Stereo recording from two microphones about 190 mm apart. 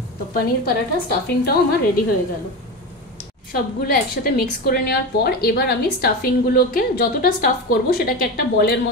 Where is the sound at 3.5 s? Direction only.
50° left (ahead or behind).